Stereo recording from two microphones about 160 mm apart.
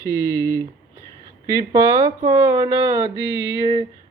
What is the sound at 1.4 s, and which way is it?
Speech, 20° right (ahead or behind).